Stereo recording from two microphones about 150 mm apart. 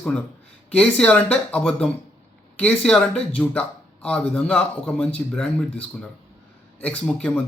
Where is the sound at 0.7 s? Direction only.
5° left (ahead or behind).